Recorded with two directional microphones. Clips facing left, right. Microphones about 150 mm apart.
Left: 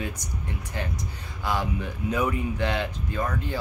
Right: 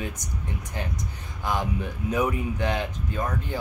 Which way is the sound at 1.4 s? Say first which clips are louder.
Even; 15° right (ahead or behind).